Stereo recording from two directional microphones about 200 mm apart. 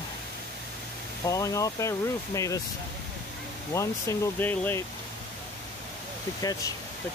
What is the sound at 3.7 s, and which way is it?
Speech, 15° left (ahead or behind).